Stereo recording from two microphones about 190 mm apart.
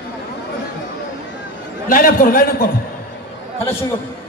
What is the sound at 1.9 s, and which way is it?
Speech, 50° left (ahead or behind).